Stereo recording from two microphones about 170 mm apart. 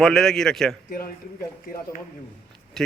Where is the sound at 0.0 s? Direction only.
Centre (ahead or behind).